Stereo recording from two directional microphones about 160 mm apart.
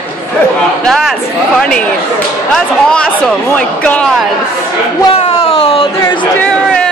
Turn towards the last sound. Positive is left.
turn(degrees=35)  # may be behind; listen again after turning